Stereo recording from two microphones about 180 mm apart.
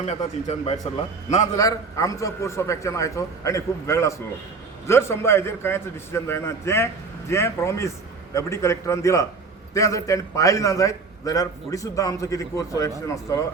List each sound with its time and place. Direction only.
0.0 s speech: 40° left (ahead or behind)
1.5 s a man's voice: 20° left (ahead or behind)